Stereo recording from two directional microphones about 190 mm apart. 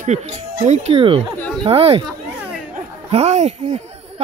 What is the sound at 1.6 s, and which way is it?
Speech, 30° right (ahead or behind).